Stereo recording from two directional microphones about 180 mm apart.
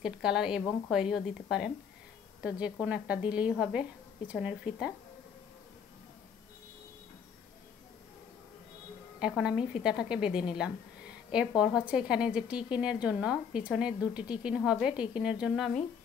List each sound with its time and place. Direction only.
0.0 s a woman's voice: 5° right (ahead or behind)
9.2 s a woman's voice: 5° right (ahead or behind)